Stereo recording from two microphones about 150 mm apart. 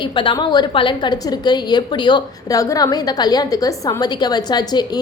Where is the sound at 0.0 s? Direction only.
30° left (ahead or behind).